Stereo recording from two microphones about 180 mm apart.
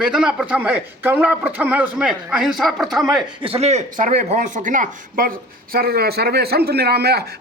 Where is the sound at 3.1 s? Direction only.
30° right (ahead or behind).